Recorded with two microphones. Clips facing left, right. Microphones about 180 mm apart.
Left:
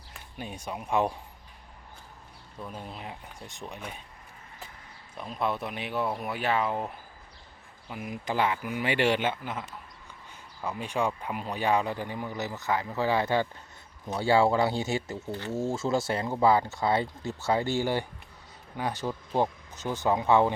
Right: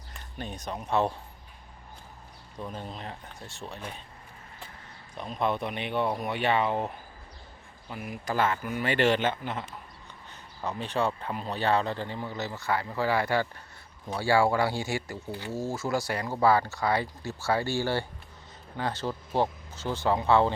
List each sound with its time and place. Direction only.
0.1 s speech: 10° left (ahead or behind)
2.6 s speech: 5° left (ahead or behind)
5.1 s speech: 5° left (ahead or behind)
7.9 s speech: 15° left (ahead or behind)